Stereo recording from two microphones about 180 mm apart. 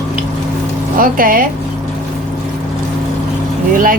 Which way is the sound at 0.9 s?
50° right (ahead or behind).